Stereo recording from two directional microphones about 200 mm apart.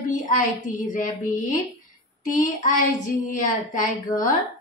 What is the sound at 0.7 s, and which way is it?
A woman's voice, 40° left (ahead or behind).